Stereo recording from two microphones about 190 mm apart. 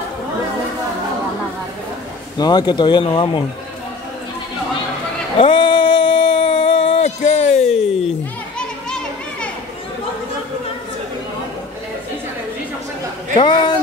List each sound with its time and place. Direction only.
2.3 s speech: 20° left (ahead or behind)
5.4 s a sound: 25° left (ahead or behind)
8.5 s children playing: 5° left (ahead or behind)
13.4 s speech: 25° left (ahead or behind)